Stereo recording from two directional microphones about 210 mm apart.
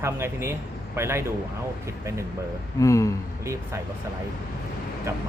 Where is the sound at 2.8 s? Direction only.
15° left (ahead or behind).